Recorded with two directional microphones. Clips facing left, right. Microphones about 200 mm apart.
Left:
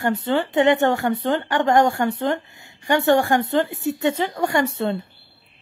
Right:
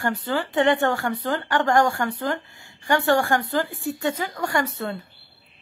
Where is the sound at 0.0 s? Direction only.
25° left (ahead or behind).